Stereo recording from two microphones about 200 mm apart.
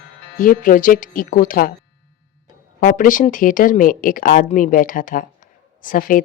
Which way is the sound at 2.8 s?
40° left (ahead or behind).